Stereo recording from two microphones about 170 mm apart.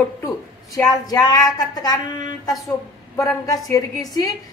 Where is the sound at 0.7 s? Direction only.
20° left (ahead or behind).